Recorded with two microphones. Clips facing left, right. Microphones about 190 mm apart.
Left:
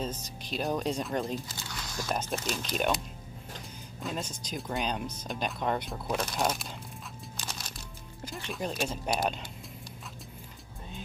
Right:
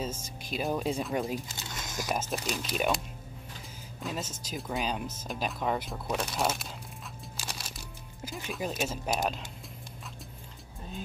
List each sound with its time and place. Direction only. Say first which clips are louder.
0.0 s speech: even; 10° right (ahead or behind)
1.7 s biting: right 1 dB; 20° right (ahead or behind)
2.1 s speech: even; 5° right (ahead or behind)
4.0 s speech: even; 5° right (ahead or behind)
7.3 s music: even; 5° right (ahead or behind)
8.3 s speech: even; 5° right (ahead or behind)